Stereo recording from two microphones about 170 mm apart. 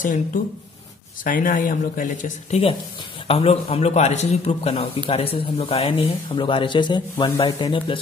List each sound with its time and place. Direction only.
0.0 s speech: 50° left (ahead or behind)
3.3 s speech: 35° left (ahead or behind)